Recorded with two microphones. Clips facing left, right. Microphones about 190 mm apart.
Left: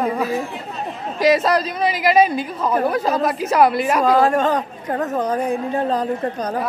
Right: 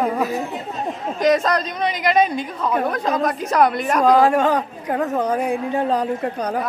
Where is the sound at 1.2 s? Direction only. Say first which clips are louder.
Left 2 dB; 5° left (ahead or behind).